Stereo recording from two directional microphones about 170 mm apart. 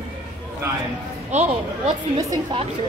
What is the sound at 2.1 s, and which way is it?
Speech, 20° right (ahead or behind).